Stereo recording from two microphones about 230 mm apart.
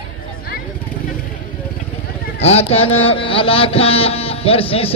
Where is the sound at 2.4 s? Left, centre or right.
Left.